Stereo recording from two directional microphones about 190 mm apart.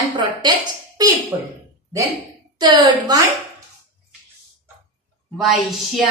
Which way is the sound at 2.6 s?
20° right (ahead or behind).